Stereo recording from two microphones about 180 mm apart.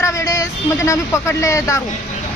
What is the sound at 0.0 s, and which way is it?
Speech, 15° left (ahead or behind).